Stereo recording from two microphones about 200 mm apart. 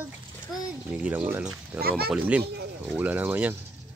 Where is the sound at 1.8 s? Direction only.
50° right (ahead or behind).